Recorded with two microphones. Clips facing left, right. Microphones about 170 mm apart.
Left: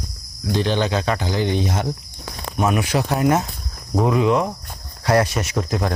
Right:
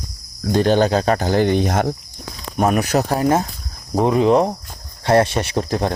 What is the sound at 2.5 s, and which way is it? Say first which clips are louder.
Speech: right 3 dB; 40° right (ahead or behind).